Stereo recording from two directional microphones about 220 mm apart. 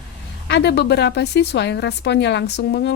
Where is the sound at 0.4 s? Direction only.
50° left (ahead or behind).